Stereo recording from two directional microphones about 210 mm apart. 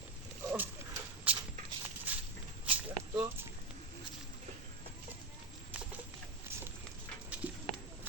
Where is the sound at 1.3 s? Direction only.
5° right (ahead or behind).